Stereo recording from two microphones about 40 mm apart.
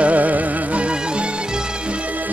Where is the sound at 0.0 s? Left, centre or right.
Right.